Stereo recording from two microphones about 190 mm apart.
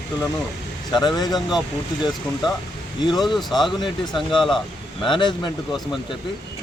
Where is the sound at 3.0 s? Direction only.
20° left (ahead or behind).